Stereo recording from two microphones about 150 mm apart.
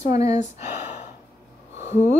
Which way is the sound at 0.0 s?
45° left (ahead or behind).